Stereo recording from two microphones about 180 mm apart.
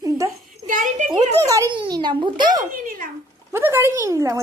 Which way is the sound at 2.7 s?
50° right (ahead or behind).